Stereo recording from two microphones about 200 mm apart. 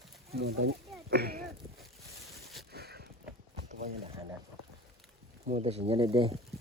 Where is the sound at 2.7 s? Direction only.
50° right (ahead or behind).